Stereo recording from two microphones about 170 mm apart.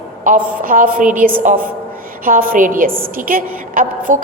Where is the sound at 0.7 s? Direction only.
55° right (ahead or behind).